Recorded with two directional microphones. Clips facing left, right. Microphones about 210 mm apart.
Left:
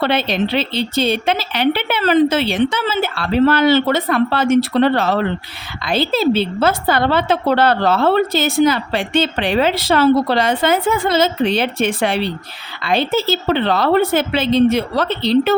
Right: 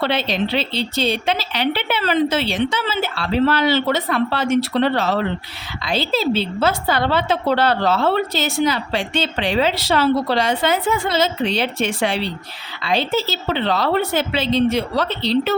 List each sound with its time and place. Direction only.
0.0 s a woman's voice: 50° left (ahead or behind)